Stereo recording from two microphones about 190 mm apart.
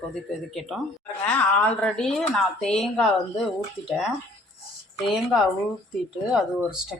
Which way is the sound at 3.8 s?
25° left (ahead or behind).